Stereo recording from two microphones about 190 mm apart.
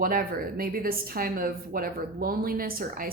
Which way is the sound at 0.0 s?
50° right (ahead or behind).